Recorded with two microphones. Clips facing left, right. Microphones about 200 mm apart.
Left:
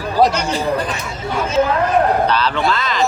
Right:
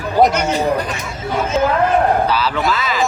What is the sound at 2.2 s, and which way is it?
Speech, 5° right (ahead or behind).